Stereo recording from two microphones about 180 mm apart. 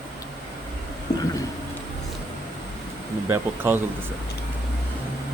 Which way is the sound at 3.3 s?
10° right (ahead or behind).